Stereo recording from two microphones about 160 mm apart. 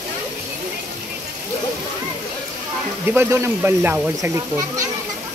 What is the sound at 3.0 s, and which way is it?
Speech, 15° right (ahead or behind).